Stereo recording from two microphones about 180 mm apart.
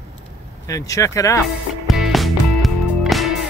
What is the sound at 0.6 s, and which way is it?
Speech, 20° left (ahead or behind).